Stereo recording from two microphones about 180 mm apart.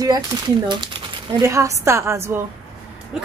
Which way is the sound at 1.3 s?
15° right (ahead or behind).